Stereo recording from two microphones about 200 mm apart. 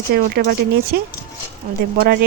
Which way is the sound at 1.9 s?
50° right (ahead or behind).